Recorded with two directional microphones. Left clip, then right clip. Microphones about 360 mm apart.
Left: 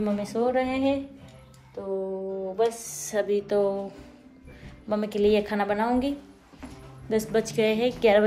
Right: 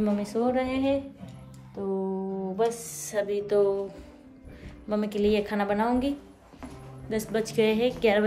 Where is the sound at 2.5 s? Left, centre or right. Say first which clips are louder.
Left 1 dB; centre.